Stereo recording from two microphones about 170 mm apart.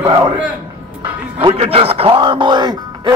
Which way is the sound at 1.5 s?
35° right (ahead or behind).